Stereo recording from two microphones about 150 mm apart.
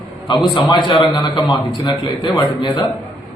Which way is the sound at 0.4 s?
30° left (ahead or behind).